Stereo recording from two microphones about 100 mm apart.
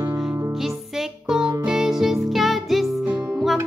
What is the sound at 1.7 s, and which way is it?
Music, 5° right (ahead or behind).